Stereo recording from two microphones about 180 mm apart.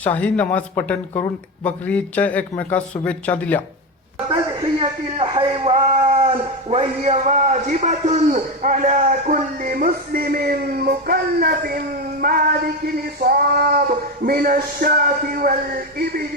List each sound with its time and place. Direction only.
0.0 s a man's voice: 10° left (ahead or behind)
4.3 s a man's voice: 30° right (ahead or behind); by 11.8 s 55° right (ahead or behind)
12.2 s a sound: 55° right (ahead or behind)